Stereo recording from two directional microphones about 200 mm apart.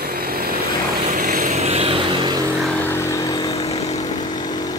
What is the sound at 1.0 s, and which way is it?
Vehicle, 40° right (ahead or behind).